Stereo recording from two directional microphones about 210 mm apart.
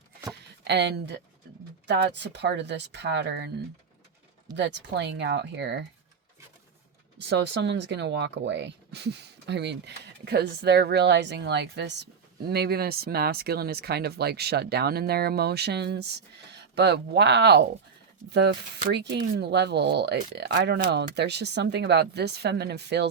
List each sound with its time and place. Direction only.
0.6 s speech: 55° right (ahead or behind)
4.5 s speech: 55° right (ahead or behind)
7.2 s speech: 55° right (ahead or behind)